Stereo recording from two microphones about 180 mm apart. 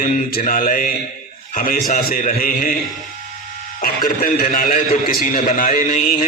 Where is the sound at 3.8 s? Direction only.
55° left (ahead or behind).